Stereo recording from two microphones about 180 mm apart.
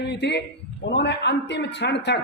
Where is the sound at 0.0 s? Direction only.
70° left (ahead or behind).